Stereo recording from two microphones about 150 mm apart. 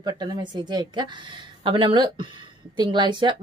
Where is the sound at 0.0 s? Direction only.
30° right (ahead or behind).